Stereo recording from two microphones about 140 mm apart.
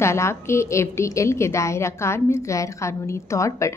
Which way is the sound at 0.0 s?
20° left (ahead or behind).